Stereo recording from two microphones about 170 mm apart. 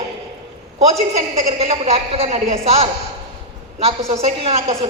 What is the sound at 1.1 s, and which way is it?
A woman's voice, 40° right (ahead or behind).